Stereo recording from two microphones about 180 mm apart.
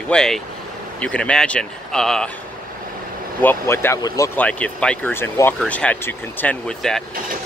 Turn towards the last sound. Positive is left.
turn(degrees=5)  # may be behind; listen again after turning